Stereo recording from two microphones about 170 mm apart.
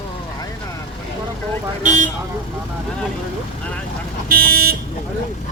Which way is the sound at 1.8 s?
50° right (ahead or behind).